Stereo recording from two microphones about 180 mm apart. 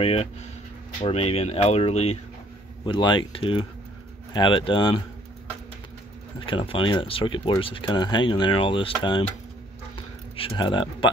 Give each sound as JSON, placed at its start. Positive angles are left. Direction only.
{"t": 0.0, "sound": "speech", "side_deg": 35}
{"t": 2.8, "sound": "speech", "side_deg": 25}
{"t": 6.4, "sound": "speech", "side_deg": 30}
{"t": 9.9, "sound": "a sound", "side_deg": 30}